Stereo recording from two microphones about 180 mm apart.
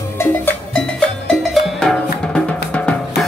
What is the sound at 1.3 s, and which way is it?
Drum, centre (ahead or behind).